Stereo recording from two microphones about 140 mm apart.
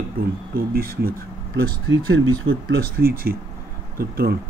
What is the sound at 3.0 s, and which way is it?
Speech, 90° right.